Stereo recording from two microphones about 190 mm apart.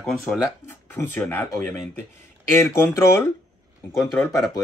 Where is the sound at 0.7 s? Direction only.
10° left (ahead or behind).